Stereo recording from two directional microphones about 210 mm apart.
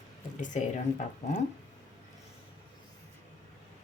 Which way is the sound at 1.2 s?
35° left (ahead or behind).